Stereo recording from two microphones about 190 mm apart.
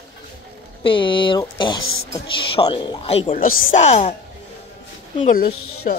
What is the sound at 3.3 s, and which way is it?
Speech, 50° left (ahead or behind).